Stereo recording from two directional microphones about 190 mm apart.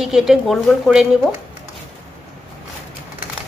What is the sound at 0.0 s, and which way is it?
A woman's voice, centre (ahead or behind).